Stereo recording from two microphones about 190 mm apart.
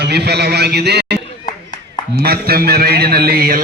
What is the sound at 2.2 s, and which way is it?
A man's voice, 55° right (ahead or behind).